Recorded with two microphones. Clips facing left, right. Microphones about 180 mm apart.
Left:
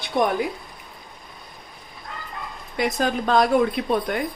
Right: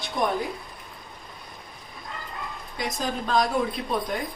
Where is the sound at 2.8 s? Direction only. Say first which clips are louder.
Left 7 dB; 65° left (ahead or behind).